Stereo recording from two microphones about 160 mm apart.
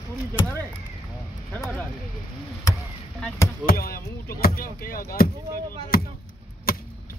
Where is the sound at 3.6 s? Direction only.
65° left (ahead or behind).